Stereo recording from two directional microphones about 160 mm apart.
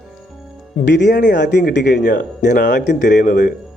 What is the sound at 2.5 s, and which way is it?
Speech, 55° left (ahead or behind).